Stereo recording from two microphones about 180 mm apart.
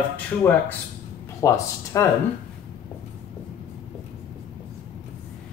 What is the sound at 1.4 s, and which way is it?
Speech, 15° left (ahead or behind).